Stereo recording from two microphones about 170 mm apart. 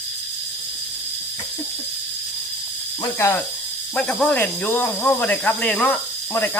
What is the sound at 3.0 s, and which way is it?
Speech, 15° left (ahead or behind).